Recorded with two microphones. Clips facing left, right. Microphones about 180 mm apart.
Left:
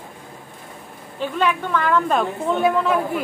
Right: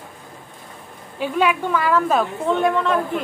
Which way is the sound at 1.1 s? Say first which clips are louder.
Right 2 dB; 10° right (ahead or behind).